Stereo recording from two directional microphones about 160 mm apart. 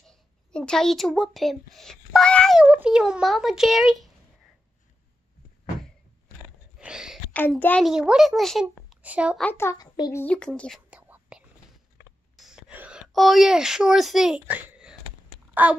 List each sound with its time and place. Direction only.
0.1 s speech: 5° left (ahead or behind)
2.6 s speech: 10° right (ahead or behind)
6.8 s a sound: 5° right (ahead or behind)
7.3 s a child's voice: 10° left (ahead or behind)
7.8 s a woman's voice: 5° right (ahead or behind)
9.4 s a child's voice: 15° left (ahead or behind)
10.2 s a child's voice: 5° left (ahead or behind)
10.9 s whispering: 10° right (ahead or behind)
12.4 s a sound: 5° right (ahead or behind)